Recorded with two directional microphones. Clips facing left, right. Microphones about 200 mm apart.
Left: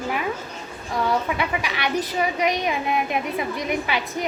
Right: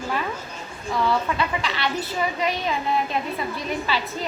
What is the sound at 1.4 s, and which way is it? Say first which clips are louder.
A woman's voice: even; 15° left (ahead or behind).